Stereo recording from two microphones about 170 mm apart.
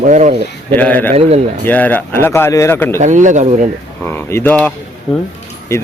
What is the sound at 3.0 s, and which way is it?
Speech, 45° right (ahead or behind).